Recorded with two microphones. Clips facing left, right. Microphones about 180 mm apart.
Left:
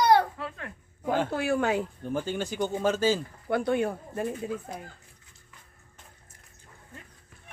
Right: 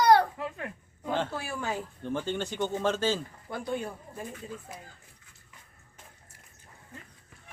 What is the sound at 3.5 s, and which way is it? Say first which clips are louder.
Speech: left 8 dB; 70° left (ahead or behind).